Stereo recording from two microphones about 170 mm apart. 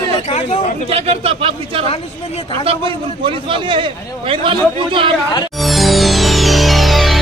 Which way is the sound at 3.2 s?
30° right (ahead or behind).